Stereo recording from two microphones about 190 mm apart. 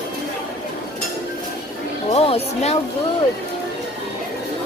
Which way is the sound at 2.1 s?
30° left (ahead or behind).